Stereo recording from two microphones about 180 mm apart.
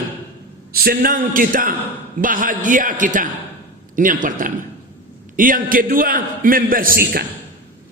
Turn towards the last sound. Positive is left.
turn(degrees=-50)  # may be behind; listen again after turning